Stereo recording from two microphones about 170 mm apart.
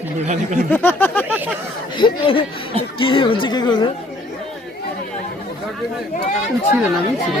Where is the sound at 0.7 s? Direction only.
10° left (ahead or behind).